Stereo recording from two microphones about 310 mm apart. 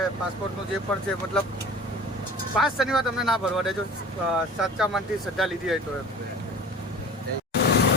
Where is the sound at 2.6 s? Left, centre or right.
Centre.